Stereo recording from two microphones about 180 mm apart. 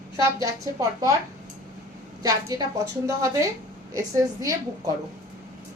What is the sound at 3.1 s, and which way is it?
A woman's voice, 15° right (ahead or behind).